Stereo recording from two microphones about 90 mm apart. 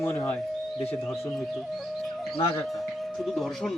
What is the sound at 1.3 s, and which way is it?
Speech, centre (ahead or behind).